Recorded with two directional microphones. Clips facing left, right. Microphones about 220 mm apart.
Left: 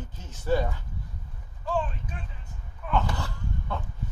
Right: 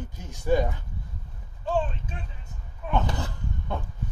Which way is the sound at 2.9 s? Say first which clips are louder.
Right 1 dB; 20° right (ahead or behind).